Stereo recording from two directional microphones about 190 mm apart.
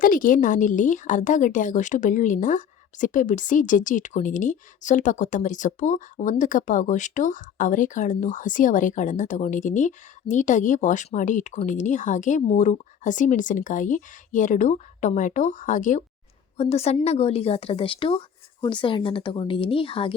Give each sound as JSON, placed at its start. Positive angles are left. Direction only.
{"t": 0.0, "sound": "a woman's voice", "side_deg": 45}